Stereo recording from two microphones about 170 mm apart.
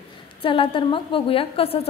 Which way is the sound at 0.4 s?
30° left (ahead or behind).